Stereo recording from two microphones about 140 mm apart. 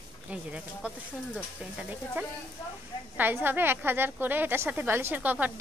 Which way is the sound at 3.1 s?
15° right (ahead or behind).